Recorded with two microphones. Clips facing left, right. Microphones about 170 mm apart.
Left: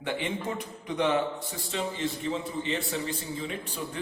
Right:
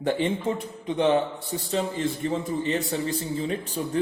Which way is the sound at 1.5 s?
40° right (ahead or behind).